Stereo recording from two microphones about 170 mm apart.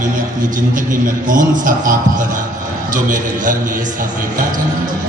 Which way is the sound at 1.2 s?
50° right (ahead or behind).